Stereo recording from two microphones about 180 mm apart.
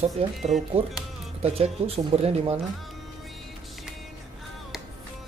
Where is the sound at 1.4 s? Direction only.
35° right (ahead or behind).